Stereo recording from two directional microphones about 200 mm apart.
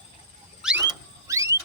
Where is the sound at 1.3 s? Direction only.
15° right (ahead or behind).